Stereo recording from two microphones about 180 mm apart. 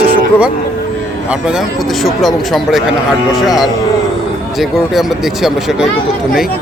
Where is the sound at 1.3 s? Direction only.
5° right (ahead or behind).